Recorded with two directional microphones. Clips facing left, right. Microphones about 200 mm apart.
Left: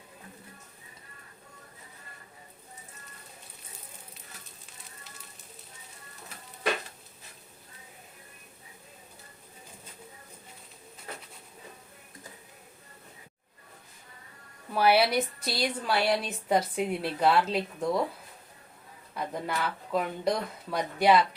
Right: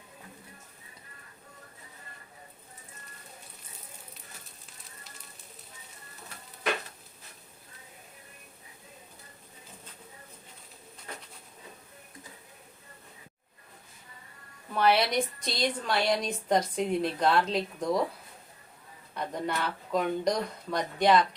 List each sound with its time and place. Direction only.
14.8 s a woman's voice: 5° left (ahead or behind)
19.1 s speech: 5° left (ahead or behind)